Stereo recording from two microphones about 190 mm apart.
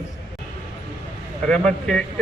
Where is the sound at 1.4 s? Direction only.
5° left (ahead or behind).